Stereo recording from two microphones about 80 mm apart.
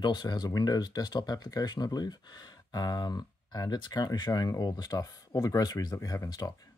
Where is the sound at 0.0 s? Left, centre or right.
Left.